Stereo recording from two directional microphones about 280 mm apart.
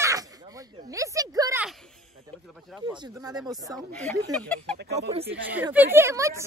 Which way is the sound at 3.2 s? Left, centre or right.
Centre.